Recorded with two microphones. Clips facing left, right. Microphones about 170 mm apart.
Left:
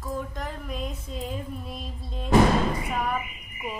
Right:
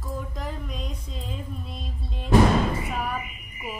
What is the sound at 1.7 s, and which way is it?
Music, centre (ahead or behind).